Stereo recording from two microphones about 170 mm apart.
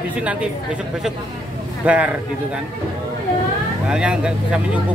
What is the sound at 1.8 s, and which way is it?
Speech, 10° right (ahead or behind).